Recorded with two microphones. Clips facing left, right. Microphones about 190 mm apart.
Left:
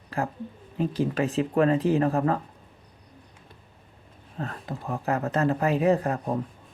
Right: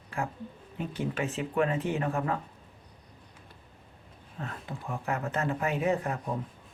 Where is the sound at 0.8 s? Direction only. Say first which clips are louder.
Left 7 dB; 35° left (ahead or behind).